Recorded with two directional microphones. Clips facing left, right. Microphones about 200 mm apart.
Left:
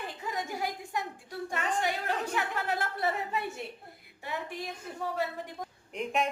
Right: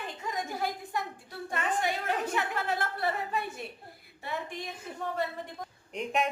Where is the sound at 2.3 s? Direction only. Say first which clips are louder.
Right 1 dB; 15° left (ahead or behind).